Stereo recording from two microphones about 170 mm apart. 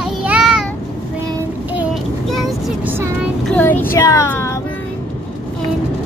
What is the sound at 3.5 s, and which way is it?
Child singing, 10° left (ahead or behind).